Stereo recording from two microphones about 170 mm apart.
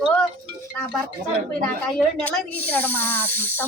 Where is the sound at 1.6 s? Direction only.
5° left (ahead or behind).